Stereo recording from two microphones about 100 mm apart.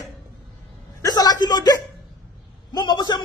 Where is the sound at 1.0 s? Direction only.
40° left (ahead or behind).